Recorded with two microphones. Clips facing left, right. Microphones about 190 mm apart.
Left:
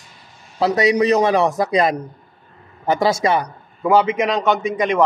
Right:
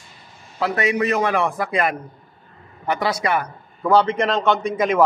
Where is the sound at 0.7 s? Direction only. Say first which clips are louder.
Left 5 dB; 20° left (ahead or behind).